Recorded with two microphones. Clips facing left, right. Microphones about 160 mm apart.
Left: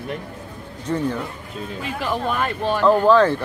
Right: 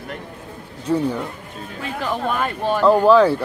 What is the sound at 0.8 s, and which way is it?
Speech, 10° right (ahead or behind).